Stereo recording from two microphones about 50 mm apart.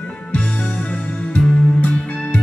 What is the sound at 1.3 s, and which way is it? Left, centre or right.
Music, left.